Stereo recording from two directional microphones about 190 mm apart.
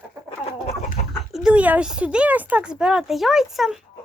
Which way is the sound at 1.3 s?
5° right (ahead or behind).